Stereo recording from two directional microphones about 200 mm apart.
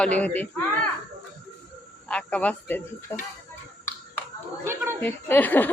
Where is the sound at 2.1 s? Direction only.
5° left (ahead or behind).